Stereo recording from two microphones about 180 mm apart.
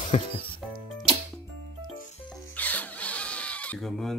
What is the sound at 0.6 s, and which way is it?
Music, centre (ahead or behind).